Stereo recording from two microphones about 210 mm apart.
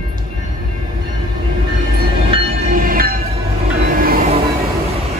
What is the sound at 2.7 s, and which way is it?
Train, 45° right (ahead or behind).